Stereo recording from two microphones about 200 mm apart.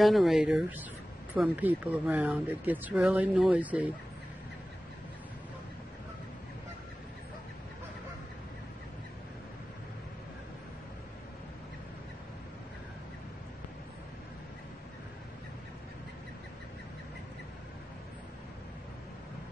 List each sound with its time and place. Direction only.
0.0 s speech: centre (ahead or behind)